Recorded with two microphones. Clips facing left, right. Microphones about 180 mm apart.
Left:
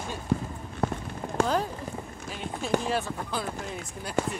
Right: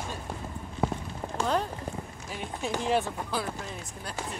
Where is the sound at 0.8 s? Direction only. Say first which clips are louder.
Even; 10° right (ahead or behind).